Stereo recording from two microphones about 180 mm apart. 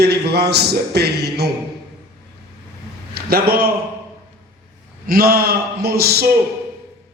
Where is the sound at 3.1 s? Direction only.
60° right (ahead or behind).